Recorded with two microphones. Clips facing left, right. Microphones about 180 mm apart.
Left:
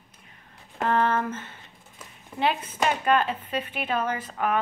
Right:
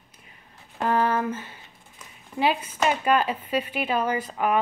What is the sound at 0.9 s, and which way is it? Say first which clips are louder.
Speech: right 1 dB; 5° right (ahead or behind).